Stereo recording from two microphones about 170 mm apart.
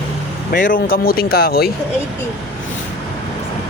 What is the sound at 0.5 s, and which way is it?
Speech, 50° left (ahead or behind).